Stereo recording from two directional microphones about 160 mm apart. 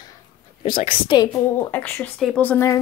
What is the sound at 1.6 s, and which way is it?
Speech, 10° left (ahead or behind).